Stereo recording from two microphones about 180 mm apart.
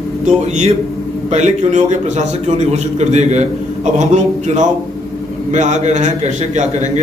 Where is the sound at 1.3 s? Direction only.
40° right (ahead or behind).